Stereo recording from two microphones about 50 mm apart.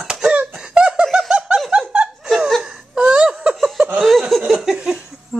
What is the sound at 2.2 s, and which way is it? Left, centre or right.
Laughter, centre.